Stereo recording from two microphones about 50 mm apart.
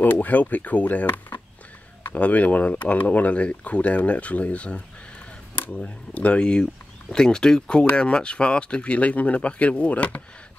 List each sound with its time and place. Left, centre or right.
0.0 s speech: left
2.1 s speech: left